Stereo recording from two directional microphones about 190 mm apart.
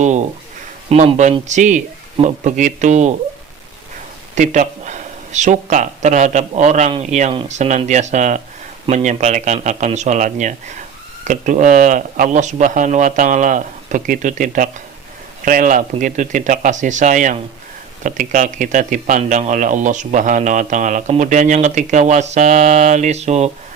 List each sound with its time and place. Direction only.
0.0 s speech: 35° right (ahead or behind)
4.4 s speech: 40° right (ahead or behind)